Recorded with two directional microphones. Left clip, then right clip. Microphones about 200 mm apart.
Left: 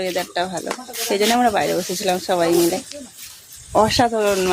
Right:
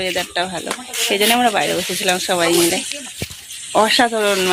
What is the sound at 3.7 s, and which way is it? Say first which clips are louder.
Speech: right 2 dB; centre (ahead or behind).